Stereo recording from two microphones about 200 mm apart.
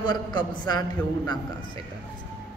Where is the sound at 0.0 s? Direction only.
20° left (ahead or behind).